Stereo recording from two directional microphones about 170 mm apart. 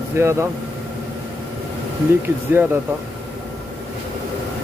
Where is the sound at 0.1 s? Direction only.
15° right (ahead or behind).